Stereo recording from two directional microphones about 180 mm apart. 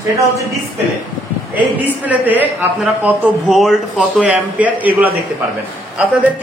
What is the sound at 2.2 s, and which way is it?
A woman's voice, 10° right (ahead or behind).